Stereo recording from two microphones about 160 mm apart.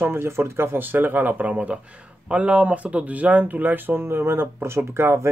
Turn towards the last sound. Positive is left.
turn(degrees=-15)  # may be behind; listen again after turning